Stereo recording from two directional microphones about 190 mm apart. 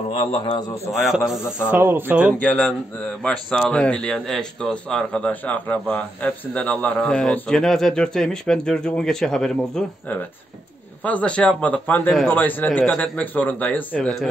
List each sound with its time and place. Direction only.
0.1 s a man's voice: 30° left (ahead or behind)
1.0 s a man's voice: centre (ahead or behind)
2.3 s a man's voice: 5° left (ahead or behind)